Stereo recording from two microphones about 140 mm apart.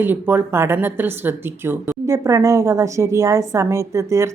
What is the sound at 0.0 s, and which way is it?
Speech, 15° right (ahead or behind).